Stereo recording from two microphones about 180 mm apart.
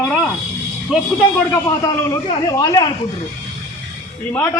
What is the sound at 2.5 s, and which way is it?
Speech, 20° left (ahead or behind).